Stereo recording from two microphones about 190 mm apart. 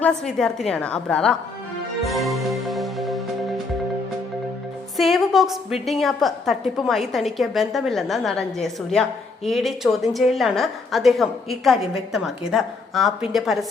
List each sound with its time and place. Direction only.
0.0 s a woman's voice: 5° left (ahead or behind)
2.0 s music: centre (ahead or behind)
4.9 s a woman's voice: centre (ahead or behind)